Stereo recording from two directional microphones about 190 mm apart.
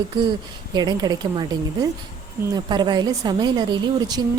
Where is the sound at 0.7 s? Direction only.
20° right (ahead or behind).